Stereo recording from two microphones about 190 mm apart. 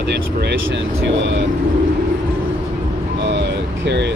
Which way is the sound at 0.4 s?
65° right (ahead or behind).